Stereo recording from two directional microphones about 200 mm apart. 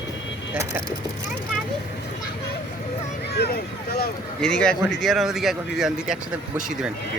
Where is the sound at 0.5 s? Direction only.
10° right (ahead or behind).